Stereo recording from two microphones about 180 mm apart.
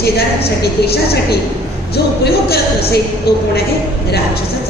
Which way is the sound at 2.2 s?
60° left (ahead or behind).